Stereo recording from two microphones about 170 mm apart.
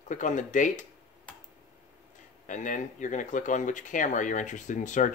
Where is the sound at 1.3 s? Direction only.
5° left (ahead or behind).